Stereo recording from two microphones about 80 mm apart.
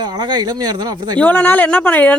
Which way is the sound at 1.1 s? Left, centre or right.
Left.